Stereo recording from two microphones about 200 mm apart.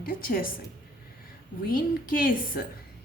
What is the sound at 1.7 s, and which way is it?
Speech, 45° left (ahead or behind).